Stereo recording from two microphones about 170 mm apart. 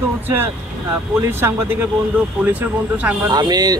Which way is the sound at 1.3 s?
15° right (ahead or behind).